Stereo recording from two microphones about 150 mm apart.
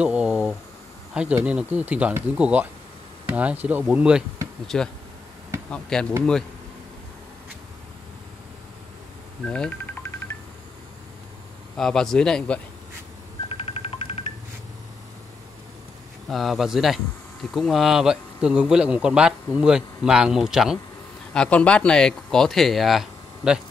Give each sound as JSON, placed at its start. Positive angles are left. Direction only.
{"t": 0.0, "sound": "a sound", "side_deg": -5}
{"t": 1.1, "sound": "a man's voice", "side_deg": -5}
{"t": 9.4, "sound": "telephone dialing", "side_deg": 5}
{"t": 11.7, "sound": "a man's voice", "side_deg": 5}
{"t": 13.5, "sound": "telephone dialing", "side_deg": 40}
{"t": 16.3, "sound": "a man's voice", "side_deg": 0}